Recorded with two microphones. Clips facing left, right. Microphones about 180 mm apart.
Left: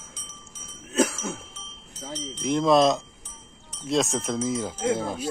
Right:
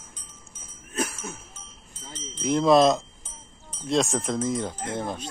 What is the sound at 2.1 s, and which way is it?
Wind chime, 70° left (ahead or behind).